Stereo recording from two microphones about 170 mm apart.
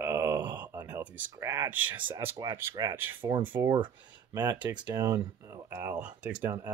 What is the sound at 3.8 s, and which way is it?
Speech, 25° right (ahead or behind).